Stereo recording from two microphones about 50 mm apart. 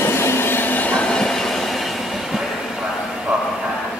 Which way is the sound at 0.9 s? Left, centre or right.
Centre.